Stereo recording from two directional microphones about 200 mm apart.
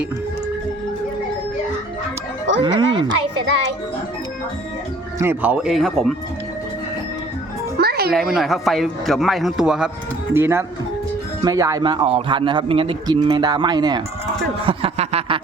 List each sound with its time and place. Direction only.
2.6 s a man's voice: 25° right (ahead or behind)
5.2 s a man's voice: 10° right (ahead or behind)
7.8 s music: 50° right (ahead or behind)
8.4 s a man's voice: centre (ahead or behind); by 14.0 s 20° right (ahead or behind)
14.6 s a sound: 30° right (ahead or behind)